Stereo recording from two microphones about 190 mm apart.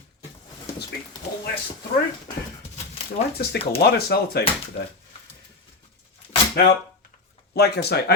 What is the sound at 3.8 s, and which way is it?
Speech, 55° left (ahead or behind).